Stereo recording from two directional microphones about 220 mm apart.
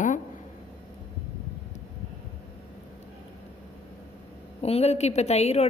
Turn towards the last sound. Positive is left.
turn(degrees=30)  # may be behind; listen again after turning